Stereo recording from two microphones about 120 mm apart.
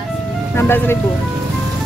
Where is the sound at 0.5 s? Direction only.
20° left (ahead or behind).